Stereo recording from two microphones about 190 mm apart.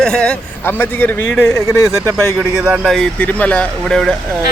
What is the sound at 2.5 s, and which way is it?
Speech, 5° right (ahead or behind).